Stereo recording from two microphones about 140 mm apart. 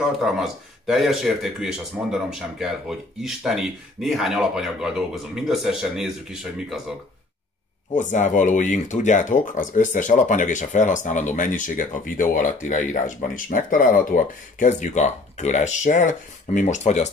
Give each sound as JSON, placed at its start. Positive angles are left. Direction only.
{"t": 0.2, "sound": "speech", "side_deg": 0}
{"t": 7.9, "sound": "speech", "side_deg": 60}